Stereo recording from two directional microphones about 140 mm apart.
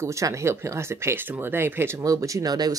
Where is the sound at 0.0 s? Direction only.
20° right (ahead or behind).